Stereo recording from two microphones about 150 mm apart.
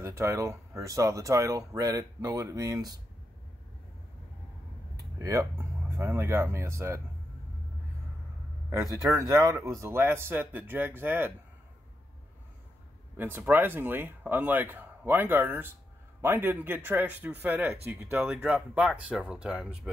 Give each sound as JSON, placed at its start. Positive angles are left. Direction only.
{"t": 0.0, "sound": "speech", "side_deg": -20}
{"t": 4.9, "sound": "a sound", "side_deg": -20}
{"t": 5.9, "sound": "speech", "side_deg": -15}
{"t": 9.1, "sound": "speech", "side_deg": -20}
{"t": 13.1, "sound": "speech", "side_deg": -15}